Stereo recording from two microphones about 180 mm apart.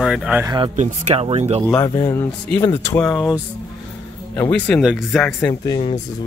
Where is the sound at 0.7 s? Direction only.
40° right (ahead or behind).